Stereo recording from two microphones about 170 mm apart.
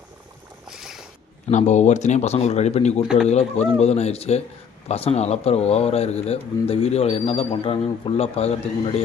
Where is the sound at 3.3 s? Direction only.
40° left (ahead or behind).